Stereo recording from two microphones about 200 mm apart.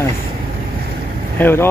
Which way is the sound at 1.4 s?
10° left (ahead or behind).